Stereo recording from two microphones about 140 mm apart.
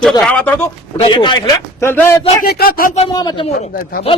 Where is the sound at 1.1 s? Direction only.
35° left (ahead or behind).